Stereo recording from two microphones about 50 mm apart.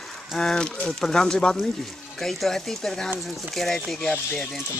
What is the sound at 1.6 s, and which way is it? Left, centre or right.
Speech, centre.